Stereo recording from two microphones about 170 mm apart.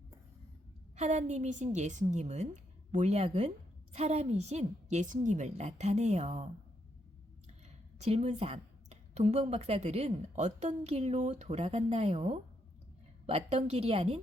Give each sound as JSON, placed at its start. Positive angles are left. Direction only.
{"t": 0.9, "sound": "a woman's voice", "side_deg": -40}
{"t": 7.9, "sound": "a woman's voice", "side_deg": -40}